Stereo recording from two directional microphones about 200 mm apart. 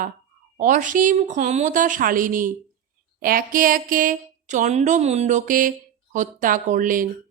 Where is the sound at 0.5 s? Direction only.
40° right (ahead or behind).